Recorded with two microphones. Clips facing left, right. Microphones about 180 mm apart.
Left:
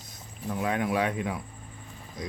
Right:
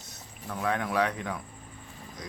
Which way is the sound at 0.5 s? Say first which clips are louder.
Left 2 dB; 15° left (ahead or behind).